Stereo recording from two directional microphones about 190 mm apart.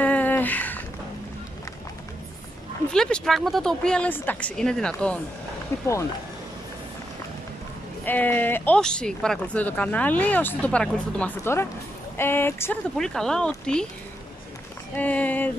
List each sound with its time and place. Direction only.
0.0 s a sound: 10° left (ahead or behind)
2.9 s a woman's voice: 5° left (ahead or behind)
8.0 s a woman's voice: 10° left (ahead or behind)
15.0 s speech: 10° left (ahead or behind)